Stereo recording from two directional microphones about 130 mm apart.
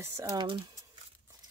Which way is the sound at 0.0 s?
20° right (ahead or behind).